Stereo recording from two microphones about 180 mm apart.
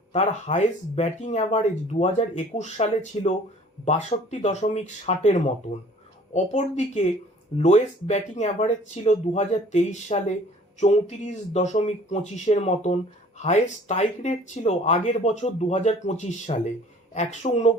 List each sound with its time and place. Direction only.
0.1 s speech: 40° left (ahead or behind)